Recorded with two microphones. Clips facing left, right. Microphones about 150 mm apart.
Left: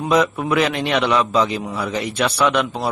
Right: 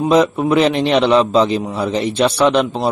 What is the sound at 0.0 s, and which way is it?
A man's voice, 25° right (ahead or behind).